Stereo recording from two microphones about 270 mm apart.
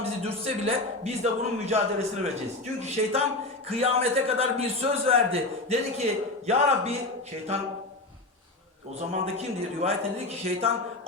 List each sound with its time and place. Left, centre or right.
0.3 s a man's voice: right
9.0 s a man's voice: right